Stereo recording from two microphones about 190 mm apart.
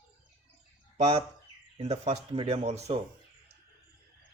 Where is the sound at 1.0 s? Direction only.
35° right (ahead or behind).